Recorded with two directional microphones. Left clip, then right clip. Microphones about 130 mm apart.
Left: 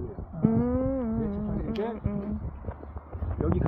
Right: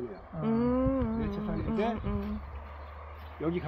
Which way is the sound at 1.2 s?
15° right (ahead or behind).